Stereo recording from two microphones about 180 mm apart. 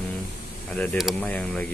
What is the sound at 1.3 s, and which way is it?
Speech, 5° left (ahead or behind).